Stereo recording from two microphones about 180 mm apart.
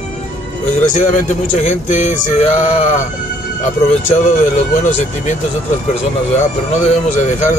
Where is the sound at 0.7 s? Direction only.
45° left (ahead or behind).